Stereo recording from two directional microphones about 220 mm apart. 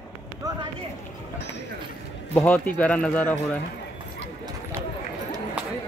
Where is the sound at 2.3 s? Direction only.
5° left (ahead or behind).